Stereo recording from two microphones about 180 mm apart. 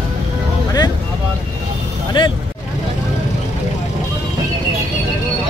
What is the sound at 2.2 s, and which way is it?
Vehicle, 25° left (ahead or behind).